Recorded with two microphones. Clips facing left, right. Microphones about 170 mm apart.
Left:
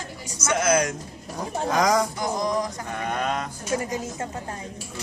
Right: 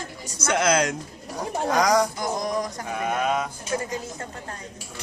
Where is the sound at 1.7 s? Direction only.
Centre (ahead or behind).